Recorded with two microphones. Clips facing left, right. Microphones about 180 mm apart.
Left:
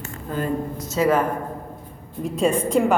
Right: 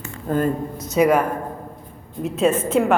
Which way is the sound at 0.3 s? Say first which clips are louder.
Right 6 dB; 50° right (ahead or behind).